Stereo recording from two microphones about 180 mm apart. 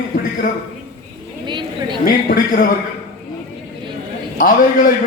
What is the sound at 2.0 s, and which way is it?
Speech, 50° left (ahead or behind).